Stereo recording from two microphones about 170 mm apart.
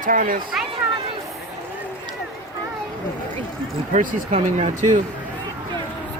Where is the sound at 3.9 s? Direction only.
40° right (ahead or behind).